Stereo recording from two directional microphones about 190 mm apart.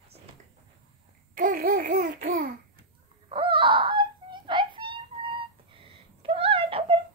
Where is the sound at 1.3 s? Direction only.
45° right (ahead or behind).